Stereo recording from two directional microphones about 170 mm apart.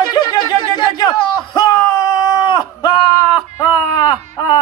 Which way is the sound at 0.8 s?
25° left (ahead or behind).